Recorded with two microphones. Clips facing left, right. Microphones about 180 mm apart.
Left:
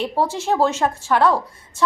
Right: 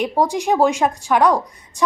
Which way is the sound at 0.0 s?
15° right (ahead or behind).